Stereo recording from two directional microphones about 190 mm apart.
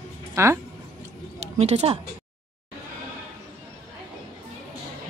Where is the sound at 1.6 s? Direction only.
35° right (ahead or behind).